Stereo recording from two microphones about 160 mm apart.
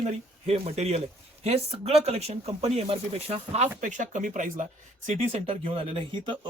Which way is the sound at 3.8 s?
50° right (ahead or behind).